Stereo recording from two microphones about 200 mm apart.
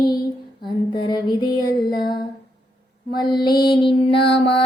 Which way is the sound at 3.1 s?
20° left (ahead or behind).